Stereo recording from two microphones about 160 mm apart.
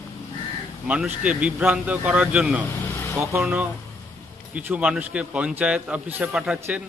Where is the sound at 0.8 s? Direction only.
10° right (ahead or behind).